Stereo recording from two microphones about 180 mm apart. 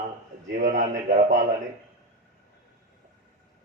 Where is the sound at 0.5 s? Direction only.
45° right (ahead or behind).